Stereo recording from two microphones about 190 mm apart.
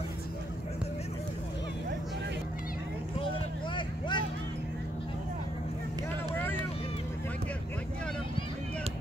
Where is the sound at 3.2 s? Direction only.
25° left (ahead or behind).